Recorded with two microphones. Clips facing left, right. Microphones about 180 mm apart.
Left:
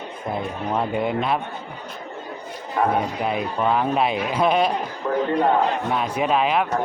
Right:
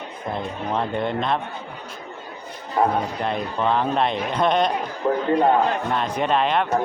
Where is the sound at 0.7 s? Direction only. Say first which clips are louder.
Left 1 dB; 5° left (ahead or behind).